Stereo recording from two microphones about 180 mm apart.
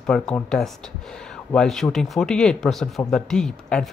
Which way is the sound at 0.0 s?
5° left (ahead or behind).